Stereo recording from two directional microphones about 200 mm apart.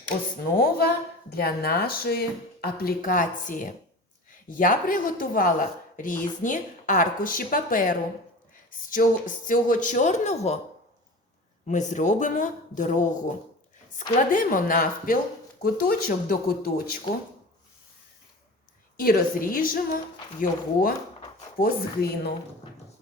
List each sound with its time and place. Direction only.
0.5 s speech: 50° left (ahead or behind); by 10.6 s 35° left (ahead or behind)
11.6 s speech: 35° left (ahead or behind)
18.9 s speech: 45° left (ahead or behind)